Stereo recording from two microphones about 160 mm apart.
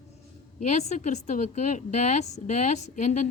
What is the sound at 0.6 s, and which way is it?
A woman's voice, 45° left (ahead or behind).